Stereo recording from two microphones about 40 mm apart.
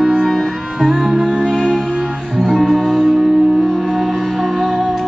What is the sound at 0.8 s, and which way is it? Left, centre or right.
Music, centre.